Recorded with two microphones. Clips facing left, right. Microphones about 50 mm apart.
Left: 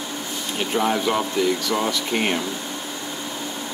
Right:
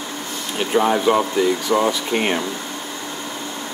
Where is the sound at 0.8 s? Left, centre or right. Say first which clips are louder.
Right 4 dB; right.